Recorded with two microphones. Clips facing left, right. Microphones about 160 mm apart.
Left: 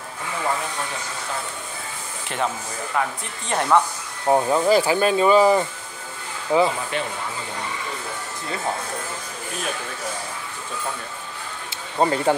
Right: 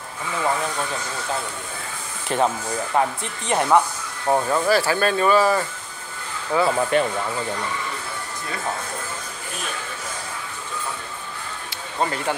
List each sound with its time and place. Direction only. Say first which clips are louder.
2.2 s speech: right 5 dB; 40° right (ahead or behind)
3.4 s speech: right 1 dB; 15° right (ahead or behind)
4.3 s speech: left 2 dB; 15° left (ahead or behind)
6.9 s speech: right 7 dB; 50° right (ahead or behind)
12.0 s speech: left 5 dB; 30° left (ahead or behind)